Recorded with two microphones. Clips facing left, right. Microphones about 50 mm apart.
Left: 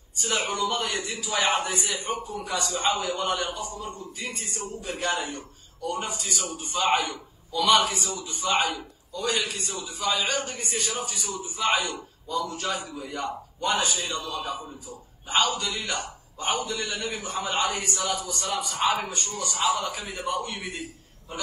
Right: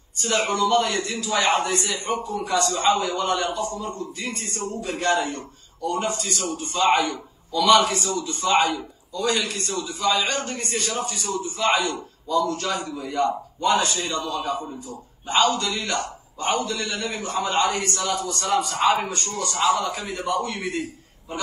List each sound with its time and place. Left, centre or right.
0.2 s a man's voice: centre
2.0 s a man's voice: right
2.4 s a man's voice: centre
18.4 s a man's voice: right
19.0 s a man's voice: centre
20.5 s a man's voice: right